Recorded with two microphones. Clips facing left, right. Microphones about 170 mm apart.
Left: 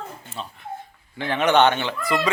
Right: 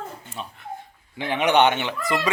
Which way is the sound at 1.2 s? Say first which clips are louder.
Left 1 dB; 15° right (ahead or behind).